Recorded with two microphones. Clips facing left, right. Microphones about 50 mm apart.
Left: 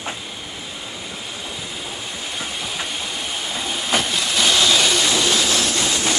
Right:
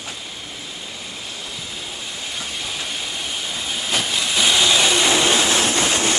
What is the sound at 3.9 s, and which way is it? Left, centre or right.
Train, centre.